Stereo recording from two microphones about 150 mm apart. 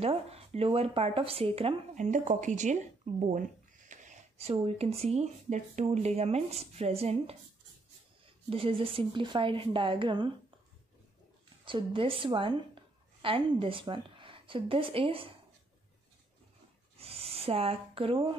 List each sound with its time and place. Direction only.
0.0 s a woman's voice: 40° right (ahead or behind)
2.0 s speech: 55° right (ahead or behind)
8.5 s a woman's voice: 40° right (ahead or behind)
11.6 s a woman's voice: 35° right (ahead or behind)
16.9 s a sound: 40° right (ahead or behind)